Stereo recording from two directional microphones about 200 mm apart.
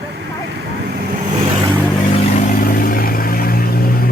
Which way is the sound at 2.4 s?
40° left (ahead or behind).